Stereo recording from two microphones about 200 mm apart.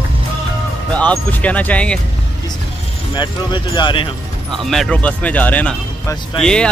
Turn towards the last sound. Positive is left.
turn(degrees=5)  # may be behind; listen again after turning